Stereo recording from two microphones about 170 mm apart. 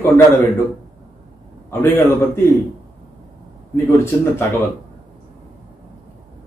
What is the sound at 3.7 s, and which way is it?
Speech, 15° left (ahead or behind).